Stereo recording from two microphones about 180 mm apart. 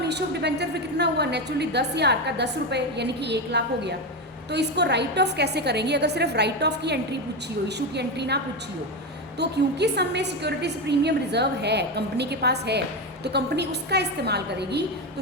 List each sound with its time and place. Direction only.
0.0 s a woman's voice: 70° right (ahead or behind)
9.4 s a woman's voice: 70° right (ahead or behind)